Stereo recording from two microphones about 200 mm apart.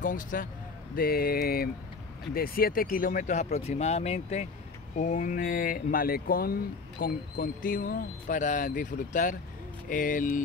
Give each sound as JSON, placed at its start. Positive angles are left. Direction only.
{"t": 0.0, "sound": "speech", "side_deg": 40}